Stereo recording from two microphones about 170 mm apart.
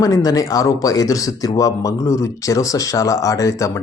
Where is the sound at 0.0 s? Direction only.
20° left (ahead or behind).